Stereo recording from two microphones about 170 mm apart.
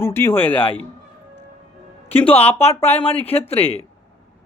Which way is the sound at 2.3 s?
35° left (ahead or behind).